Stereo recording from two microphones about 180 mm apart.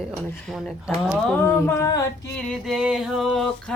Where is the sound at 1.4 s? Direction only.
15° left (ahead or behind).